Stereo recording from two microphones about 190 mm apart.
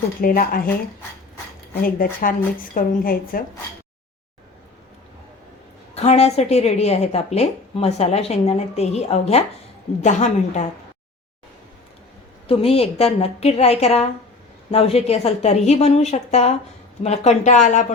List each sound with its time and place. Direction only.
0.2 s a woman's voice: 50° left (ahead or behind)
1.8 s a woman's voice: 50° left (ahead or behind)
5.9 s a woman's voice: 35° left (ahead or behind)
12.5 s a woman's voice: 30° left (ahead or behind)